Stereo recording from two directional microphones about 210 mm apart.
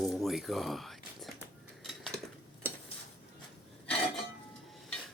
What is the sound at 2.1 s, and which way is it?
Cutlery, 50° right (ahead or behind).